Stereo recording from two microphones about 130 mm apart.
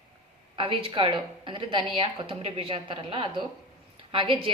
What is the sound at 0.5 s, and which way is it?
A woman's voice, 40° right (ahead or behind).